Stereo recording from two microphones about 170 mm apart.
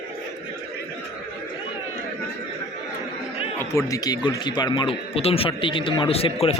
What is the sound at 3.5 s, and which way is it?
Speech, 20° left (ahead or behind).